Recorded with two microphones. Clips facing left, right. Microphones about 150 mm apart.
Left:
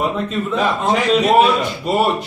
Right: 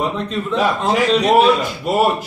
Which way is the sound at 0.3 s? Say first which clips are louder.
Even; 5° left (ahead or behind).